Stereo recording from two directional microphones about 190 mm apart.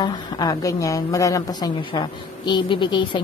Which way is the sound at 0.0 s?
20° left (ahead or behind).